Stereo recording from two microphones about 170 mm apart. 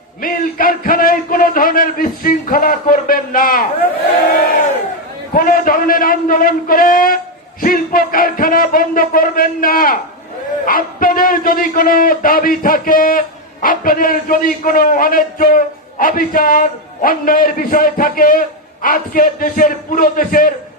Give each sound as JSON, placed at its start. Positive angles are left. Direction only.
{"t": 0.2, "sound": "a man's voice", "side_deg": 55}
{"t": 5.3, "sound": "a man's voice", "side_deg": 55}